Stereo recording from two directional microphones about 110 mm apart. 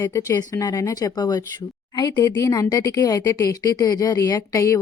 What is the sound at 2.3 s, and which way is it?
Speech, 30° left (ahead or behind).